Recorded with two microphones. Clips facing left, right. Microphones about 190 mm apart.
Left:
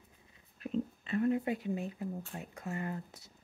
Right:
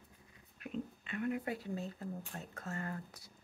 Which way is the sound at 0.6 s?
35° left (ahead or behind).